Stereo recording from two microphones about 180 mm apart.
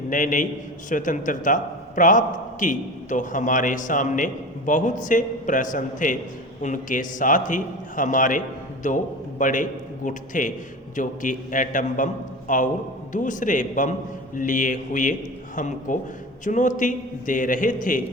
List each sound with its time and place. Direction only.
0.1 s a man's voice: 45° left (ahead or behind)